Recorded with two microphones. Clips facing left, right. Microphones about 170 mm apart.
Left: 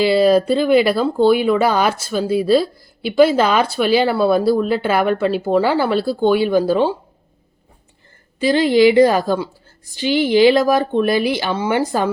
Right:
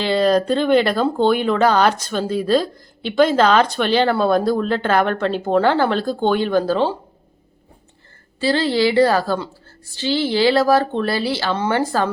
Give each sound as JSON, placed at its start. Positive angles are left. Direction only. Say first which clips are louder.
{"t": 0.0, "sound": "speech", "louder": "left 3 dB", "side_deg": 5}
{"t": 8.4, "sound": "speech", "louder": "left 5 dB", "side_deg": 15}